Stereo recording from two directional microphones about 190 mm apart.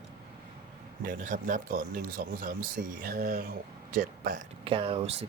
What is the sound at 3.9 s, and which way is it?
Speech, 45° right (ahead or behind).